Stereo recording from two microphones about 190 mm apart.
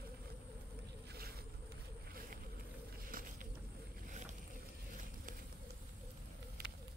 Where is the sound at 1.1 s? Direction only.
55° right (ahead or behind).